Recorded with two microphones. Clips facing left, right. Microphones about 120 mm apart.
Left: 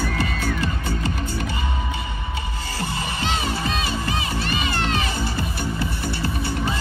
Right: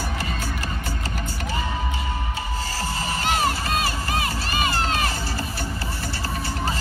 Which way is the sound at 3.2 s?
55° right (ahead or behind).